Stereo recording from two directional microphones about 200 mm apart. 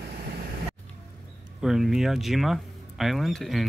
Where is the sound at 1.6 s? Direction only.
Centre (ahead or behind).